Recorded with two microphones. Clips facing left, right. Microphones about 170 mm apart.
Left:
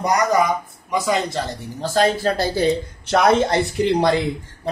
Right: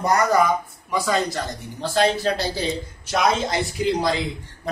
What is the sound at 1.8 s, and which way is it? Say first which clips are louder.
Speech: left 2 dB; 40° left (ahead or behind).